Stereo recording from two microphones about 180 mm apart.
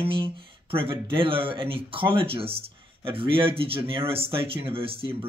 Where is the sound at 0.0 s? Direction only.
30° right (ahead or behind).